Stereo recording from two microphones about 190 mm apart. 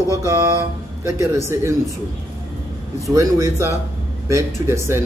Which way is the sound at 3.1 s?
15° right (ahead or behind).